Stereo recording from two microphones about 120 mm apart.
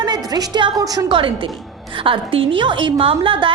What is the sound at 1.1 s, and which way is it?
A woman's voice, 45° right (ahead or behind).